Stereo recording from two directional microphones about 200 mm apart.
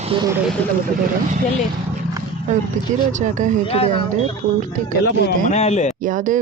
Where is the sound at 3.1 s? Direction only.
40° right (ahead or behind).